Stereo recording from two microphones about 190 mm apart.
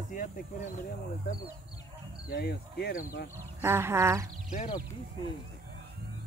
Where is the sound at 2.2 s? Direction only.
55° left (ahead or behind).